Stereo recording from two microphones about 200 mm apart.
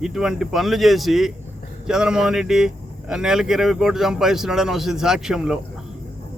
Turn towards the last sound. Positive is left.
turn(degrees=-5)  # may be behind; listen again after turning